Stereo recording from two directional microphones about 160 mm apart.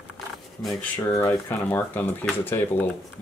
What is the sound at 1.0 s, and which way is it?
Speech, 15° left (ahead or behind).